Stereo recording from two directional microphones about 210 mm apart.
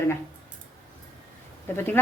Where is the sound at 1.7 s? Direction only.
10° left (ahead or behind).